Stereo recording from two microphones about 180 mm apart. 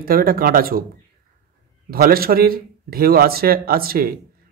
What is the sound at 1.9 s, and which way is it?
A man's voice, 55° right (ahead or behind).